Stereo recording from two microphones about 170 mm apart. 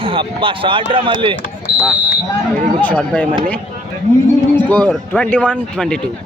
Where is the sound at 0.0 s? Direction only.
30° right (ahead or behind).